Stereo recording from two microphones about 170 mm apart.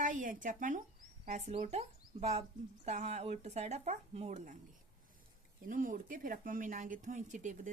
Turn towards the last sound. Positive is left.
turn(degrees=-45)  # may be behind; listen again after turning